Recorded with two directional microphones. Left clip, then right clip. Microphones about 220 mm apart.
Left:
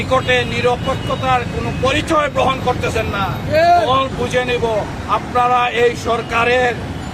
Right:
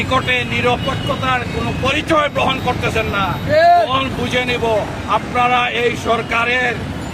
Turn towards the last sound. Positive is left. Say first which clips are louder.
# left 2 dB
turn(degrees=0)  # may be behind; listen again after turning